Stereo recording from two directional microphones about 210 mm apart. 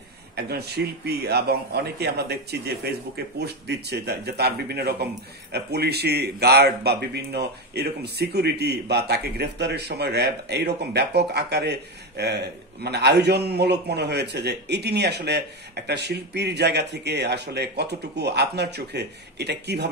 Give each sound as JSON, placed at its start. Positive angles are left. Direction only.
{"t": 0.5, "sound": "a man's voice", "side_deg": -50}